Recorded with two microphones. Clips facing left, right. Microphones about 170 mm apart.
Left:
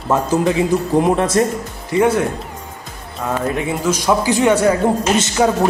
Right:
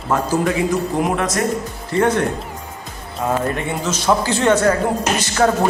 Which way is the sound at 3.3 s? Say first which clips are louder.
Left 1 dB; centre (ahead or behind).